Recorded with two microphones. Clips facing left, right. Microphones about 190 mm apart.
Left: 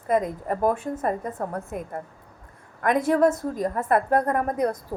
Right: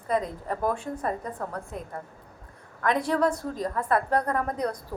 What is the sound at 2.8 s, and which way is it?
A woman's voice, 50° left (ahead or behind).